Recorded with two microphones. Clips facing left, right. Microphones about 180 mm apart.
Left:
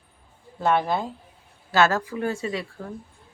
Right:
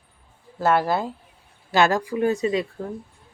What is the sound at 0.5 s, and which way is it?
Speech, 5° right (ahead or behind).